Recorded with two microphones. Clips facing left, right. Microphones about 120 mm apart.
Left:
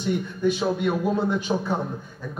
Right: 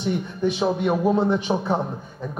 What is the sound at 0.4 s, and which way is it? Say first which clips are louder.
A man's voice: right 2 dB; 15° right (ahead or behind).